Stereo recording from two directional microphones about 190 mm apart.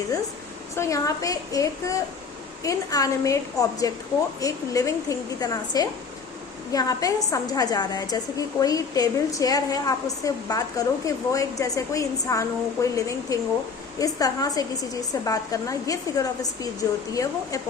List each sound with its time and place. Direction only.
0.8 s a woman's voice: 15° left (ahead or behind)